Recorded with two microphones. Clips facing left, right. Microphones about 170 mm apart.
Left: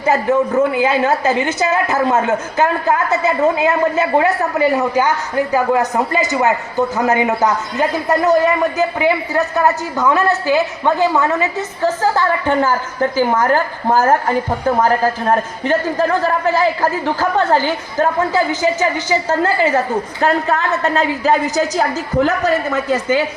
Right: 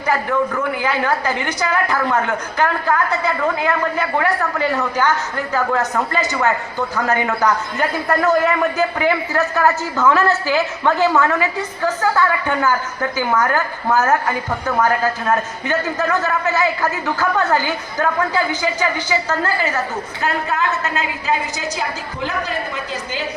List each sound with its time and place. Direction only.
0.0 s a woman's voice: 25° left (ahead or behind); by 23.2 s 50° left (ahead or behind)